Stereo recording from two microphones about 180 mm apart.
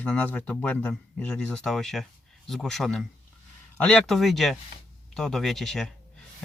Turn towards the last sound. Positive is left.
turn(degrees=0)  # may be behind; listen again after turning